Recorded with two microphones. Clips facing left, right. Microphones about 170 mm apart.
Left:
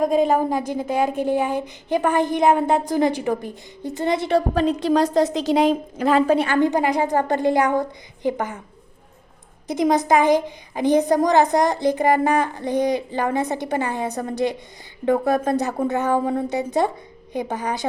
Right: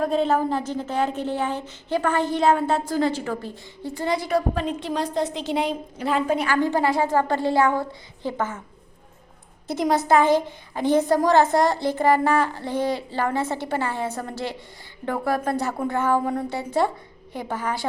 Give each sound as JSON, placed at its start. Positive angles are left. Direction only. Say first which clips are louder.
{"t": 0.0, "sound": "a woman's voice", "louder": "left 3 dB", "side_deg": 10}
{"t": 5.5, "sound": "a woman's voice", "louder": "left 7 dB", "side_deg": 90}
{"t": 6.1, "sound": "a woman's voice", "louder": "left 5 dB", "side_deg": 35}
{"t": 9.6, "sound": "a woman's voice", "louder": "left 2 dB", "side_deg": 15}